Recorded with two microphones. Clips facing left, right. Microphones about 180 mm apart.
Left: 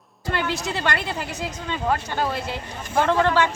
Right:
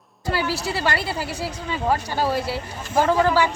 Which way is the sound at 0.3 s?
5° right (ahead or behind).